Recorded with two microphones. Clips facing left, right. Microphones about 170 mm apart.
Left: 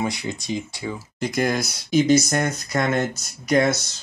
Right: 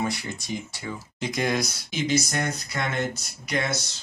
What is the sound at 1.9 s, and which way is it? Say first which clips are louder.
Speech: left 10 dB; 40° left (ahead or behind).